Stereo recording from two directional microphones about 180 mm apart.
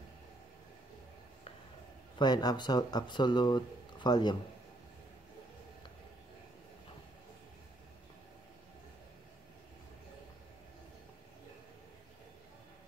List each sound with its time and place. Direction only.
2.1 s speech: 25° left (ahead or behind)